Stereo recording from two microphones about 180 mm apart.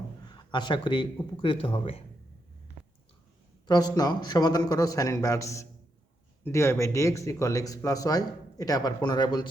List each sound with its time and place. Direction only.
0.3 s speech: 25° left (ahead or behind)
3.7 s speech: 20° left (ahead or behind)